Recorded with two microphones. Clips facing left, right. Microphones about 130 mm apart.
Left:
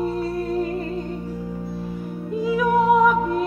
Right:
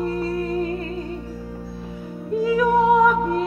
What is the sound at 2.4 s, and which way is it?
Music, 5° left (ahead or behind).